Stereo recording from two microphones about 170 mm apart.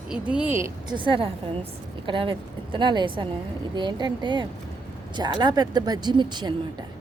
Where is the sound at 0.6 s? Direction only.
25° right (ahead or behind).